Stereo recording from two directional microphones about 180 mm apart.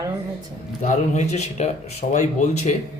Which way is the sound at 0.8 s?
40° left (ahead or behind).